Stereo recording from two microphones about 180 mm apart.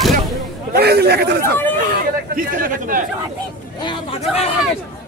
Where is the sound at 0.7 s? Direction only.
60° right (ahead or behind).